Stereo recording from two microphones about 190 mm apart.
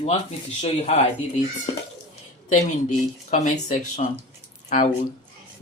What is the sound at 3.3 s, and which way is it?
Speech, 40° left (ahead or behind).